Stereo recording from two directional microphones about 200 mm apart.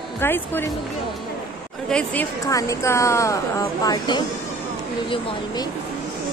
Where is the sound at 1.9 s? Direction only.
10° left (ahead or behind).